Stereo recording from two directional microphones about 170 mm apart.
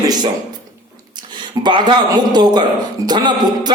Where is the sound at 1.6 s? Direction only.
25° right (ahead or behind).